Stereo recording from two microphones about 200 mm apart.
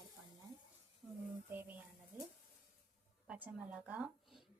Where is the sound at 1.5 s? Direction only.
10° right (ahead or behind).